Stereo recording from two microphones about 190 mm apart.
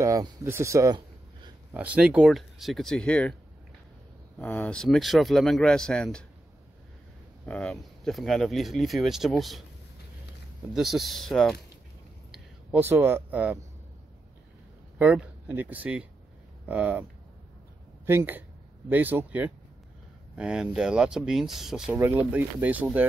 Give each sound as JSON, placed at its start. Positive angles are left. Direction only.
{"t": 0.0, "sound": "speech", "side_deg": -20}
{"t": 1.7, "sound": "speech", "side_deg": -10}
{"t": 4.4, "sound": "speech", "side_deg": 10}
{"t": 7.4, "sound": "speech", "side_deg": 5}
{"t": 10.7, "sound": "speech", "side_deg": 0}
{"t": 12.3, "sound": "speech", "side_deg": -10}
{"t": 15.0, "sound": "speech", "side_deg": -10}
{"t": 18.0, "sound": "speech", "side_deg": -10}